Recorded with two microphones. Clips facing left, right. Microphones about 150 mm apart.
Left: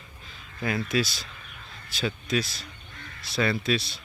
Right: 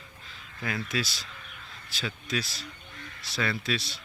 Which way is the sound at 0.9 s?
15° left (ahead or behind).